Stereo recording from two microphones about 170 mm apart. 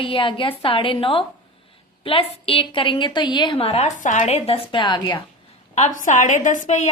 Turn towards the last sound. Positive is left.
turn(degrees=45)  # may be behind; listen again after turning